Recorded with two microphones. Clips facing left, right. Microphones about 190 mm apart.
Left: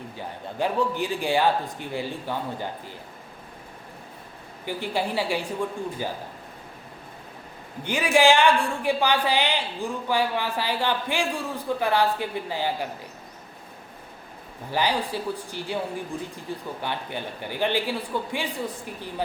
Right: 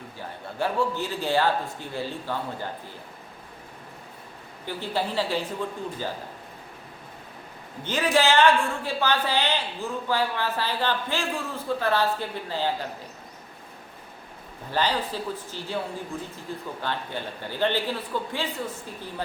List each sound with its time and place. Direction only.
0.2 s a woman's voice: 15° left (ahead or behind)
4.6 s a woman's voice: 15° left (ahead or behind)
7.9 s a woman's voice: 10° left (ahead or behind)
14.7 s a woman's voice: 10° left (ahead or behind)